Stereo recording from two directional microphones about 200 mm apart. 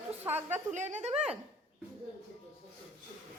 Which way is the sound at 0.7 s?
35° right (ahead or behind).